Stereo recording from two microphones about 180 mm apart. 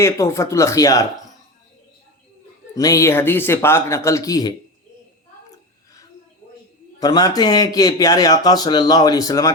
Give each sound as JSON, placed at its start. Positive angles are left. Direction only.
{"t": 0.0, "sound": "speech", "side_deg": 15}
{"t": 2.7, "sound": "speech", "side_deg": 20}
{"t": 7.0, "sound": "speech", "side_deg": 20}